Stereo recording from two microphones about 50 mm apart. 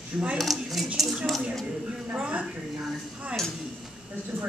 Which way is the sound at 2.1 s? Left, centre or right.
Right.